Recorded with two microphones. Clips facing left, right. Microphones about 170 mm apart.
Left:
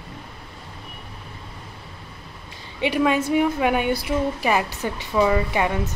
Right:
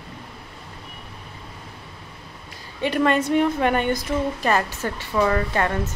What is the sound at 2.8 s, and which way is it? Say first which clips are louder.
A woman's voice: even; 5° left (ahead or behind).